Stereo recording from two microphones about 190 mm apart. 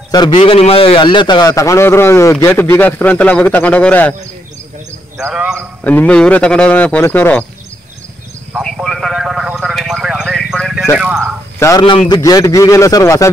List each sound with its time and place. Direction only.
0.1 s a man's voice: 25° left (ahead or behind); by 4.1 s 5° left (ahead or behind)
5.3 s a man's voice: 5° right (ahead or behind)
5.9 s a man's voice: 5° left (ahead or behind)
8.5 s a sound: centre (ahead or behind)
11.0 s a man's voice: 5° right (ahead or behind)
11.6 s a man's voice: 20° left (ahead or behind)